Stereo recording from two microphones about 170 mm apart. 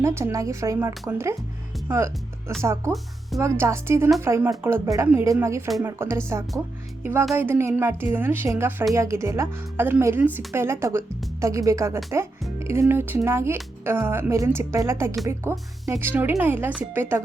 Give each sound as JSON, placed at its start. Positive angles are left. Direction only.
{"t": 0.0, "sound": "speech", "side_deg": -15}
{"t": 2.6, "sound": "speech", "side_deg": -15}